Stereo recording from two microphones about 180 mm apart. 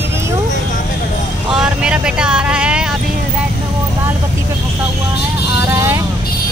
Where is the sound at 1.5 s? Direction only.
5° right (ahead or behind).